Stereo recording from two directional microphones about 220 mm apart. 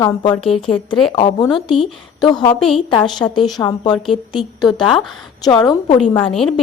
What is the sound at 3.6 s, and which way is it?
Speech, 20° left (ahead or behind).